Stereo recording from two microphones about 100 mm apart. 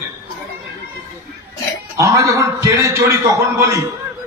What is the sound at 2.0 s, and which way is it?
A man's voice, 30° right (ahead or behind).